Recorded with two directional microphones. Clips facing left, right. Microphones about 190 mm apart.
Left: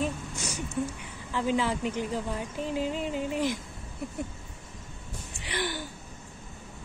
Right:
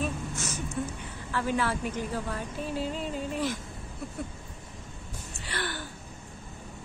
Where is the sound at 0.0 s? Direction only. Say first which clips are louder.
Left 1 dB; 15° left (ahead or behind).